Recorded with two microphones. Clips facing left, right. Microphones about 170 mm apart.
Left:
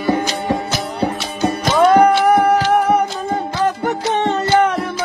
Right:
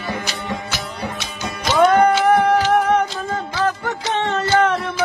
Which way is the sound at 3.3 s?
20° left (ahead or behind).